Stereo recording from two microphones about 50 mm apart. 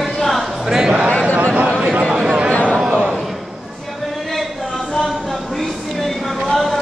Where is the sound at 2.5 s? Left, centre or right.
Left.